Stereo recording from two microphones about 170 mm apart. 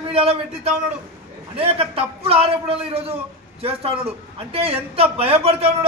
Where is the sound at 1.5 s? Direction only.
35° right (ahead or behind).